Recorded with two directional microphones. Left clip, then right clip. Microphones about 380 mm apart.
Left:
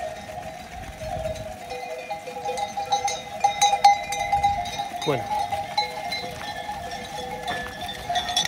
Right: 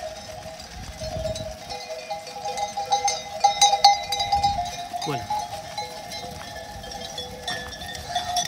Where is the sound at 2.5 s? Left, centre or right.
Centre.